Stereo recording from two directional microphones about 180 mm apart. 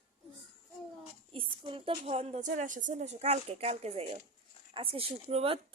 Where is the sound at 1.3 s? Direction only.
30° right (ahead or behind).